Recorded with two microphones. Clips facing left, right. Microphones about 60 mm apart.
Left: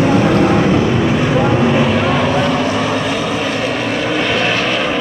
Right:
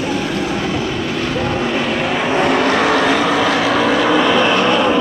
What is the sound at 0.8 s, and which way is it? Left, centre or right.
Vehicle, left.